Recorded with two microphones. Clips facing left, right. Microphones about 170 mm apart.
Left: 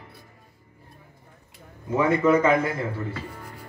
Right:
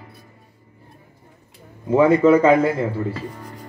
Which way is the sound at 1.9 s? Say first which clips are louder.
Right 7 dB; 35° right (ahead or behind).